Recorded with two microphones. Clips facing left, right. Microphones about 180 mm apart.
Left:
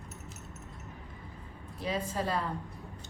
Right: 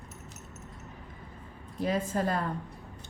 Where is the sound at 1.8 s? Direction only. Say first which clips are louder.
Right 4 dB; 45° right (ahead or behind).